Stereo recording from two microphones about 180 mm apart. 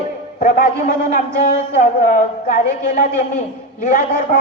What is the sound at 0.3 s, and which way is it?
Speech, 50° left (ahead or behind).